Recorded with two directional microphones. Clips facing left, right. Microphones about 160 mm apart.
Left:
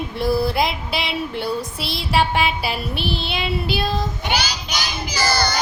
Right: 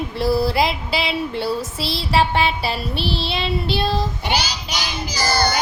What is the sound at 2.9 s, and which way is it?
Child singing, 30° right (ahead or behind).